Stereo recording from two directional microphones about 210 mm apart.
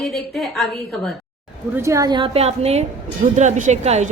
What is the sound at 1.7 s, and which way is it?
A woman's voice, 15° right (ahead or behind).